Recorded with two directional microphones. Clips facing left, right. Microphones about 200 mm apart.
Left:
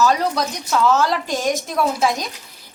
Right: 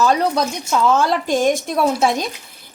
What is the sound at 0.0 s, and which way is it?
A woman's voice, 25° right (ahead or behind).